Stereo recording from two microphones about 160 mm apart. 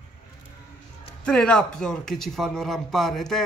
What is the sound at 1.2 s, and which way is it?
A man's voice, 5° left (ahead or behind).